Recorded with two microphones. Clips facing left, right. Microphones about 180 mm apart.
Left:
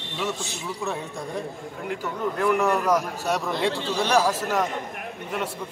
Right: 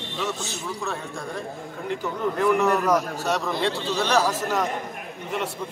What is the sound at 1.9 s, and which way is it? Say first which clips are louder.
A man's voice: right 2 dB; 5° left (ahead or behind).